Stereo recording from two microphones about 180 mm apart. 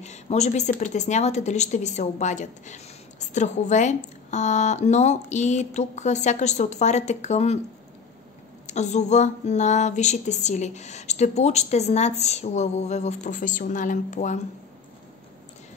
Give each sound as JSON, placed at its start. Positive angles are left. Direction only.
{"t": 0.0, "sound": "speech", "side_deg": 40}
{"t": 8.6, "sound": "speech", "side_deg": 40}